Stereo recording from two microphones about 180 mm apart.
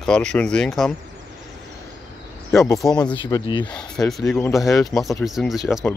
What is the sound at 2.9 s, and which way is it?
Speech, 25° left (ahead or behind).